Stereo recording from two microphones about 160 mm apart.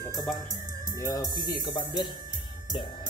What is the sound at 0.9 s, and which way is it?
Speech, 20° left (ahead or behind).